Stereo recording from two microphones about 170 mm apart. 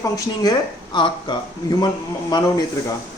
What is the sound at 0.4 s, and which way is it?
Speech, 20° left (ahead or behind).